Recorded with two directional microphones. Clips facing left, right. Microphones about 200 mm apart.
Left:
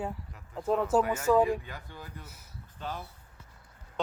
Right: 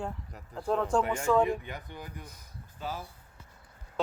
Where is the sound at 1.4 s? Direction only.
20° right (ahead or behind).